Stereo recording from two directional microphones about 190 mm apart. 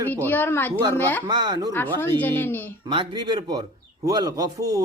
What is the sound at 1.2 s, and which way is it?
Speech, 20° right (ahead or behind).